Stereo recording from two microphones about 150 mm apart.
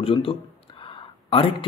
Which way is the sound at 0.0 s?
40° left (ahead or behind).